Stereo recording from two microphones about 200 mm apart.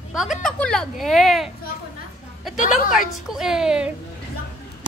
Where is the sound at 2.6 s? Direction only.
40° left (ahead or behind).